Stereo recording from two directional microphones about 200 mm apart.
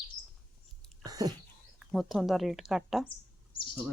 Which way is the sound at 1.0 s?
20° right (ahead or behind).